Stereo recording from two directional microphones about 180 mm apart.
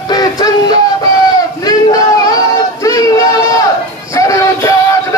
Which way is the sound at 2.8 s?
20° left (ahead or behind).